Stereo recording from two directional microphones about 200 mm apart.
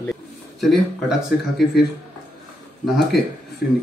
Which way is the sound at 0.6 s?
Centre (ahead or behind).